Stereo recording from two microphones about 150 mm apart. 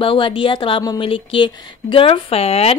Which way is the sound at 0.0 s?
35° left (ahead or behind).